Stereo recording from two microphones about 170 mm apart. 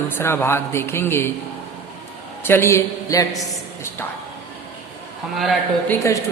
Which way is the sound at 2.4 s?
15° left (ahead or behind).